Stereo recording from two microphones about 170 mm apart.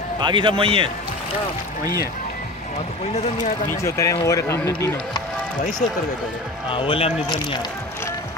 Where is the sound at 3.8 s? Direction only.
15° left (ahead or behind).